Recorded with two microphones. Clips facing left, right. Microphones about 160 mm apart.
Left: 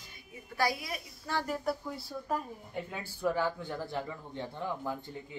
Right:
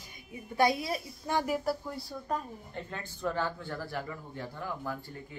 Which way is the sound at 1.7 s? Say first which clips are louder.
Right 1 dB; centre (ahead or behind).